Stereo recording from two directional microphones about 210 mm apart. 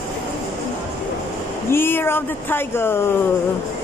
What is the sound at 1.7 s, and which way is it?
Speech, 10° left (ahead or behind).